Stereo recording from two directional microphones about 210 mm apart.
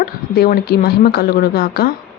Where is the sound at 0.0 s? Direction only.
45° left (ahead or behind).